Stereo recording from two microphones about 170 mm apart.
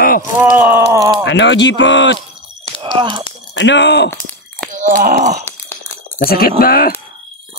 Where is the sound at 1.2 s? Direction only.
90° left.